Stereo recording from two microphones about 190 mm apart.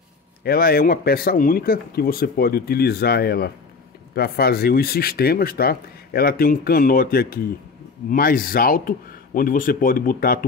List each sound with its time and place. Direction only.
0.4 s speech: 55° left (ahead or behind)